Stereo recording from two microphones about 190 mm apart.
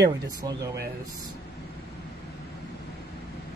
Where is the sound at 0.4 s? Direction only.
20° right (ahead or behind).